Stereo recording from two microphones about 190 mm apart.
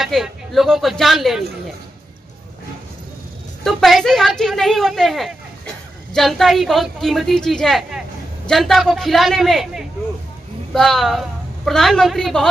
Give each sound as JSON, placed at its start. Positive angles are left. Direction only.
{"t": 0.0, "sound": "speech", "side_deg": 0}
{"t": 3.6, "sound": "a woman's voice", "side_deg": 0}